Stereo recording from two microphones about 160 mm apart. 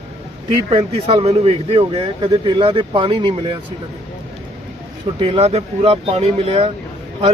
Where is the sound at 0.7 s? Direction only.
40° right (ahead or behind).